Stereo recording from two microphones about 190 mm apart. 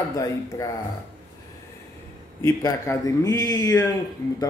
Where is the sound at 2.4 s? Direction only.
15° left (ahead or behind).